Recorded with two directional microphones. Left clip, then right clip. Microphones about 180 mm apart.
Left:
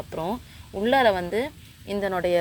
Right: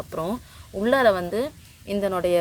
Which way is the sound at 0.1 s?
15° right (ahead or behind).